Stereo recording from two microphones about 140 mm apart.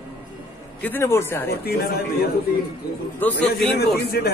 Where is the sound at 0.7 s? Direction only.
15° left (ahead or behind).